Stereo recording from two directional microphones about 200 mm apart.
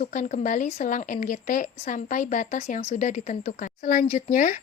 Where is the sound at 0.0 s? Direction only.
40° left (ahead or behind).